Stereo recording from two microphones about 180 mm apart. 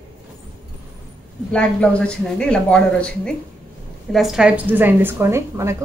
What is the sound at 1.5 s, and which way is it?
A woman's voice, 5° left (ahead or behind).